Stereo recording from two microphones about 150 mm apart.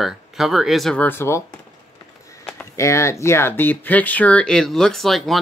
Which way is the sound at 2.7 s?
20° left (ahead or behind).